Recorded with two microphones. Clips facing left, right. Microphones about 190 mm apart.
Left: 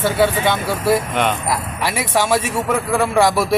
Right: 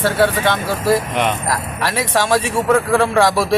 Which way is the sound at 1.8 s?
10° left (ahead or behind).